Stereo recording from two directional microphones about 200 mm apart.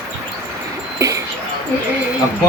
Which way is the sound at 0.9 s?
15° right (ahead or behind).